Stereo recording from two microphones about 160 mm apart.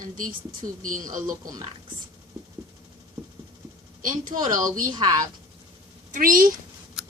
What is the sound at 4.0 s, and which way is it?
Speech, 55° right (ahead or behind).